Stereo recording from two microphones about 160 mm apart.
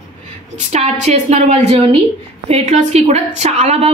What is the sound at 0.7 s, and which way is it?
A woman's voice, 45° right (ahead or behind).